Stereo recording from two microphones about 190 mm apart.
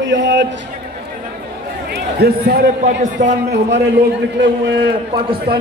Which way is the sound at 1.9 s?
55° right (ahead or behind).